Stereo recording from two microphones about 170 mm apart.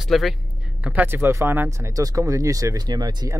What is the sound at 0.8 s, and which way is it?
Speech, 10° right (ahead or behind).